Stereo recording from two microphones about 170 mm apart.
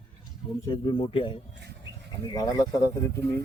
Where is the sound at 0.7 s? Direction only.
30° left (ahead or behind).